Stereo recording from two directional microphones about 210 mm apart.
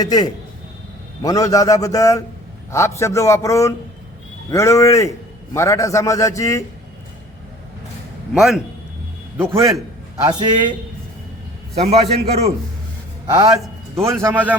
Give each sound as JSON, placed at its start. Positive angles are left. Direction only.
{"t": 0.0, "sound": "a man's voice", "side_deg": 20}
{"t": 8.3, "sound": "a man's voice", "side_deg": 0}
{"t": 9.4, "sound": "a man's voice", "side_deg": -15}
{"t": 13.3, "sound": "a man's voice", "side_deg": -15}